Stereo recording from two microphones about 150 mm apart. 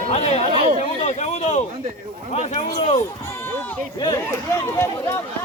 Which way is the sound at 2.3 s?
45° left (ahead or behind).